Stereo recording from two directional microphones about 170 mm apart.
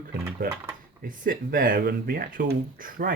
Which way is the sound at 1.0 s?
55° right (ahead or behind).